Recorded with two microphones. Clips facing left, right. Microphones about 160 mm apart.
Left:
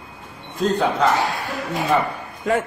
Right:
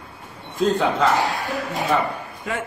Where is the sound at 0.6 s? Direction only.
Centre (ahead or behind).